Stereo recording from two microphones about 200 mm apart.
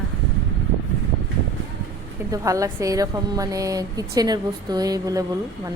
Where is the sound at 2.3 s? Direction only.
15° right (ahead or behind).